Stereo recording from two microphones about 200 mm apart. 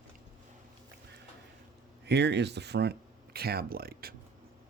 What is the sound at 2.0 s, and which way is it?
Speech, 55° right (ahead or behind).